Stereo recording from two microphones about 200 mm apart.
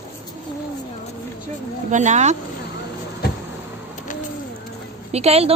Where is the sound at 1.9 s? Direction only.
35° right (ahead or behind).